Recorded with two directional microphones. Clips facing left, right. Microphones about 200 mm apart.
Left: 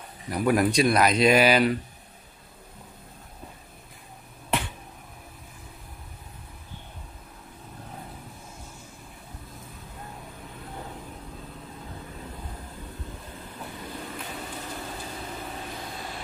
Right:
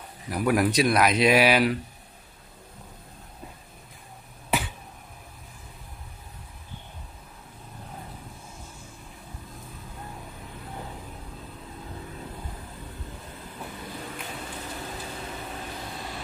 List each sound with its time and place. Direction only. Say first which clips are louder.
0.3 s speech: left 1 dB; centre (ahead or behind)
4.5 s finger snapping: right 1 dB; centre (ahead or behind)